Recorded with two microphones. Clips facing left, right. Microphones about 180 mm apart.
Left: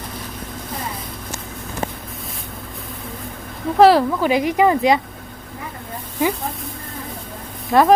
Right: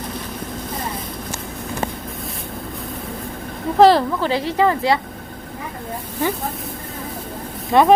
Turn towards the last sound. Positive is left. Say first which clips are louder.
# even
turn(degrees=0)  # may be behind; listen again after turning